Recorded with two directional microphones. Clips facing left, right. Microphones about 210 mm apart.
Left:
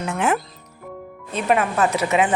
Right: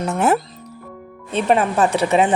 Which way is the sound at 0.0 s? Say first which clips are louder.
Right 4 dB; 40° right (ahead or behind).